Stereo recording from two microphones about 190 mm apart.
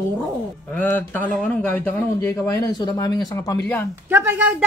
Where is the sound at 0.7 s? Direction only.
10° left (ahead or behind).